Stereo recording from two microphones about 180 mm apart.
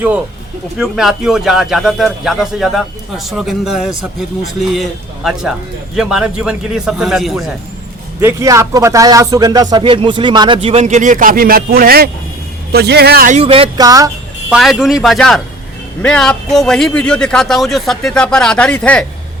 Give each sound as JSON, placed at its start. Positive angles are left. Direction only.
{"t": 0.8, "sound": "speech", "side_deg": -5}
{"t": 8.2, "sound": "speech", "side_deg": -15}
{"t": 13.3, "sound": "speech", "side_deg": -30}
{"t": 14.5, "sound": "speech", "side_deg": 0}